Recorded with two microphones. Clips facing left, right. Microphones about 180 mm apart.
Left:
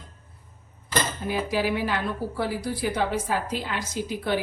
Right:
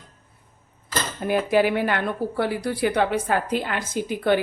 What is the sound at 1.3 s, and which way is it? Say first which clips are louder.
A woman's voice: right 7 dB; 55° right (ahead or behind).